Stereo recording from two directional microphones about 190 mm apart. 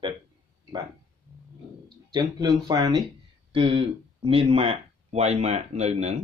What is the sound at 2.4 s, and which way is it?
Speech, 20° right (ahead or behind).